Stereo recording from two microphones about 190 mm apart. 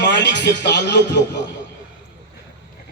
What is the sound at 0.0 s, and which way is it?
A man's voice, 65° left (ahead or behind).